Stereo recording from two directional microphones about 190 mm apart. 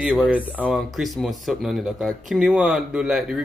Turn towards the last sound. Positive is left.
turn(degrees=0)  # may be behind; listen again after turning